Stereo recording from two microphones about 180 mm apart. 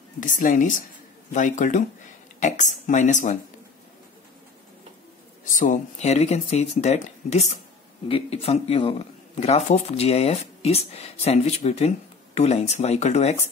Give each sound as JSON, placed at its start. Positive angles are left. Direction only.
{"t": 0.2, "sound": "speech", "side_deg": 45}
{"t": 5.4, "sound": "speech", "side_deg": 45}